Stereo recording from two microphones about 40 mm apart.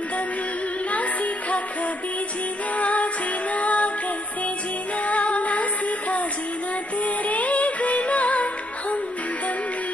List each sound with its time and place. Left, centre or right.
0.8 s music: left
2.7 s music: left
4.9 s music: left